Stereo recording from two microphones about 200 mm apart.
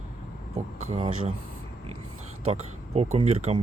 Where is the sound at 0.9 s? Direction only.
30° right (ahead or behind).